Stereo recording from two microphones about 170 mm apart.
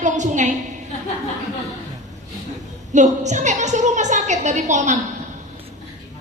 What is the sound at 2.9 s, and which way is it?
A woman's voice, 45° right (ahead or behind).